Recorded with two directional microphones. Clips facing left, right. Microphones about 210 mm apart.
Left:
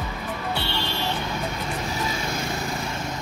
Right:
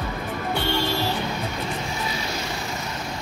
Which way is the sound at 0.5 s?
45° right (ahead or behind).